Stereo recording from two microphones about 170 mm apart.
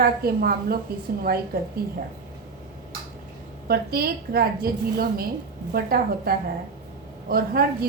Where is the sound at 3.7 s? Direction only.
65° right (ahead or behind).